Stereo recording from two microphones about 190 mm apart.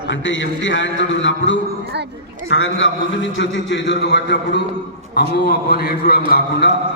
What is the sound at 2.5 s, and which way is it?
A man's voice, 80° left.